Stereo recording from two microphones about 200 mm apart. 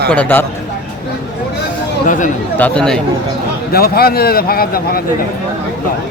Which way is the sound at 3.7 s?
50° left (ahead or behind).